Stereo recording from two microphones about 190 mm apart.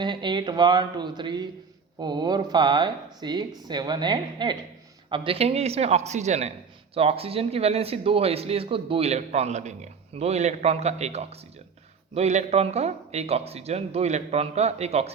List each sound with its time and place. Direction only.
0.0 s speech: 25° right (ahead or behind)